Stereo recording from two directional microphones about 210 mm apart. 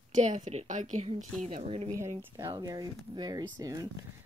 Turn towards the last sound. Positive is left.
turn(degrees=-15)  # may be behind; listen again after turning